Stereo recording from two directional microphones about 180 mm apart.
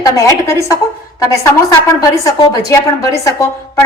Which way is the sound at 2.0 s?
20° left (ahead or behind).